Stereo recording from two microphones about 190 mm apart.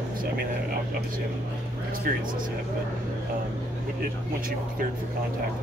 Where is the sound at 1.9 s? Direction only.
45° right (ahead or behind).